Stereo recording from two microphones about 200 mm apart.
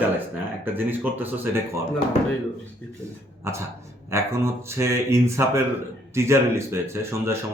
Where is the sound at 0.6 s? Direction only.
10° right (ahead or behind).